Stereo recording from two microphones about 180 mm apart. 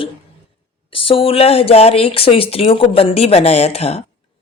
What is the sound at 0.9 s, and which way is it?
A woman's voice, 30° left (ahead or behind).